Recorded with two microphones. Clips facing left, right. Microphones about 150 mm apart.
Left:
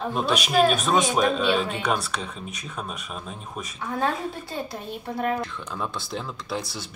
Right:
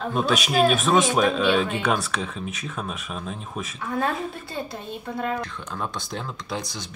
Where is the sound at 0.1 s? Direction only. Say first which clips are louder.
Right 1 dB; centre (ahead or behind).